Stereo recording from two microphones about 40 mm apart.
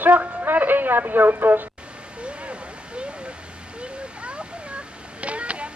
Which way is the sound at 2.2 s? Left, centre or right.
Right.